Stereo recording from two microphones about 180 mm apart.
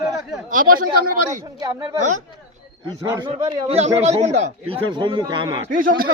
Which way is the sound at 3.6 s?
35° right (ahead or behind).